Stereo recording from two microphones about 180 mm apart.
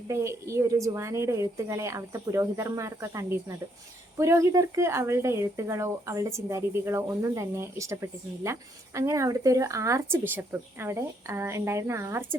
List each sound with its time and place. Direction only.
0.1 s speech: 15° right (ahead or behind)